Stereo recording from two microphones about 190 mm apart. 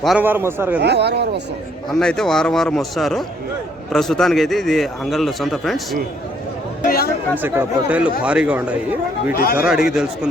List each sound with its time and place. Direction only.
0.0 s speech: 5° right (ahead or behind)
0.8 s speech: 60° right (ahead or behind)
1.9 s a man's voice: 5° left (ahead or behind)
6.8 s speech: 50° left (ahead or behind)
7.4 s speech: 10° right (ahead or behind)
9.3 s speech: 50° left (ahead or behind)
9.6 s a man's voice: 5° right (ahead or behind)